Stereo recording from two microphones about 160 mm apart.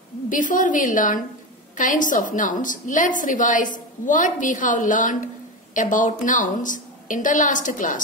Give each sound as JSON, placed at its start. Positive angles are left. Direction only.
{"t": 0.3, "sound": "a woman's voice", "side_deg": 55}